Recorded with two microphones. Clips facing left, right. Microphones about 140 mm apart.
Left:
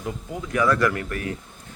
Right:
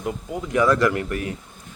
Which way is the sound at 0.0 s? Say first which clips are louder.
Right 3 dB; 20° right (ahead or behind).